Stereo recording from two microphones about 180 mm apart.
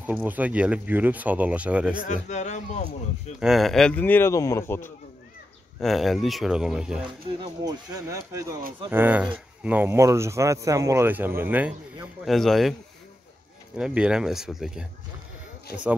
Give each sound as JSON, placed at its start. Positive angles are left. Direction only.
{"t": 0.0, "sound": "speech", "side_deg": -10}
{"t": 2.0, "sound": "a man's voice", "side_deg": 40}
{"t": 3.3, "sound": "speech", "side_deg": 0}
{"t": 5.8, "sound": "speech", "side_deg": 0}
{"t": 7.2, "sound": "speech", "side_deg": -25}
{"t": 13.7, "sound": "speech", "side_deg": -5}
{"t": 15.7, "sound": "speech", "side_deg": 60}